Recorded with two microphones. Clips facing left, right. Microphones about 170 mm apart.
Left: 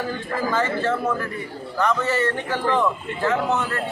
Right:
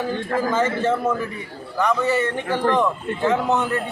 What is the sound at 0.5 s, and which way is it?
A man's voice, 20° right (ahead or behind).